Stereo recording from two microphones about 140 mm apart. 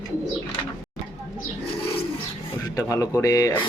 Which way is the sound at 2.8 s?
20° left (ahead or behind).